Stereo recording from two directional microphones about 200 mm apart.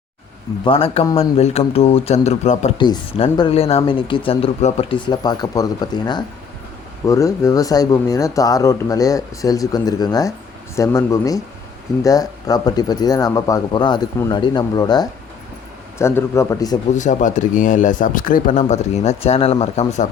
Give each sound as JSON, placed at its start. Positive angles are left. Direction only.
{"t": 0.6, "sound": "speech", "side_deg": 25}
{"t": 2.7, "sound": "speech", "side_deg": 20}
{"t": 16.9, "sound": "speech", "side_deg": 40}